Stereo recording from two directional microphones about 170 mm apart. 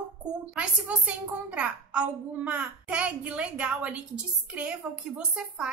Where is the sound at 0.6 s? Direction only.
10° right (ahead or behind).